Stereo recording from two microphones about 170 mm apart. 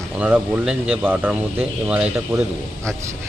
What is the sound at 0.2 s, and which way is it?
Speech, 5° right (ahead or behind).